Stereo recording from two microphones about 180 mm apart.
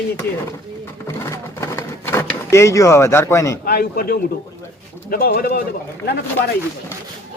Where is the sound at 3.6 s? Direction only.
60° left (ahead or behind).